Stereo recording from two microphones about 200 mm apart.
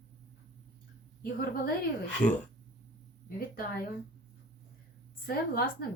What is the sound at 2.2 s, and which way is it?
Speech, 5° left (ahead or behind).